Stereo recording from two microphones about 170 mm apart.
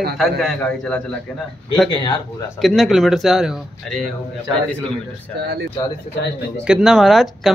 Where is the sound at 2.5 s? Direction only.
Centre (ahead or behind).